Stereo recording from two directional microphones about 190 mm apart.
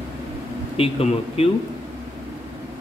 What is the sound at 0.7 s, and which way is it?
Speech, 30° left (ahead or behind).